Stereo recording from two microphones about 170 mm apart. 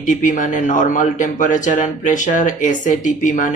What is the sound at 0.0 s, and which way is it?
Speech, 50° left (ahead or behind).